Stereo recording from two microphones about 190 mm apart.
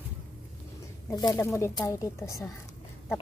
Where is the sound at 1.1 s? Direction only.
20° left (ahead or behind).